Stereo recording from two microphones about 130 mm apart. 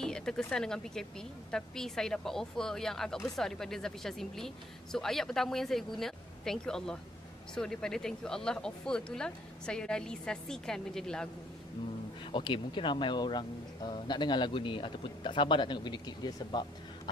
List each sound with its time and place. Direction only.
0.0 s speech: 5° left (ahead or behind)
12.3 s speech: 40° left (ahead or behind)